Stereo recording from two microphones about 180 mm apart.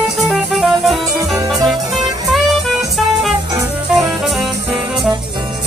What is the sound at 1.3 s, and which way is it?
Music, 20° right (ahead or behind).